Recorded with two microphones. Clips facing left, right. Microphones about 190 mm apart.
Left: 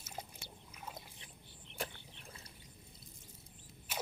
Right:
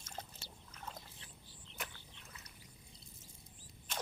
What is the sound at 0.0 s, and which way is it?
Boat, 10° left (ahead or behind).